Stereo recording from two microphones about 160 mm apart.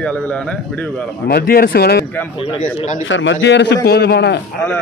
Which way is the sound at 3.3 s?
90° left.